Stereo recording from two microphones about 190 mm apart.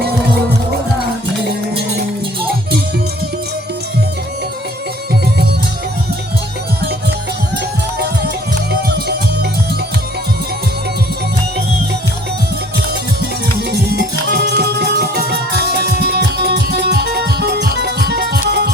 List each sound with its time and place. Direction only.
8.7 s music: 60° right (ahead or behind)
13.7 s music: 60° right (ahead or behind)